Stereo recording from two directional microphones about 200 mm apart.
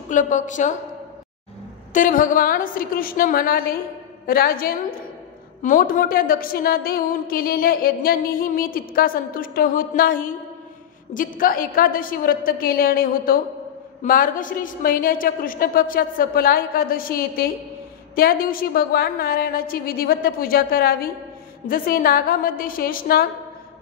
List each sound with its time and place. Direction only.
0.1 s a woman's voice: 40° left (ahead or behind)
2.0 s a woman's voice: 40° left (ahead or behind)